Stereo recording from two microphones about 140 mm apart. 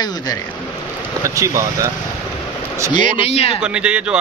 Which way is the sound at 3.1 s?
45° left (ahead or behind).